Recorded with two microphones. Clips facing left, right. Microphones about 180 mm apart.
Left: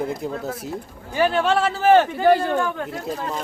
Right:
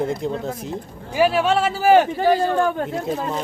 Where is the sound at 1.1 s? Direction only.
10° right (ahead or behind).